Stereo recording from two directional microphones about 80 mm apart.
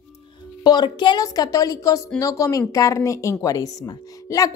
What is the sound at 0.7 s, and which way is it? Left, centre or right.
Speech, left.